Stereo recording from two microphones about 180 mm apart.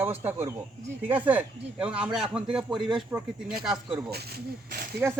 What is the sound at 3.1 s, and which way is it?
Speech, 15° right (ahead or behind).